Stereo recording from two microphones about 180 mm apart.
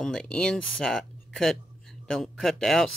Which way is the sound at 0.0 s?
5° left (ahead or behind).